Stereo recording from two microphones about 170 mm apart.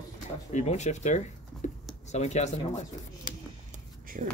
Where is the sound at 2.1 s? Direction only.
40° left (ahead or behind).